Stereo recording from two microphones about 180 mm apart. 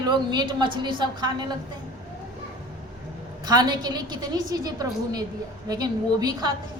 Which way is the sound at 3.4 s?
20° right (ahead or behind).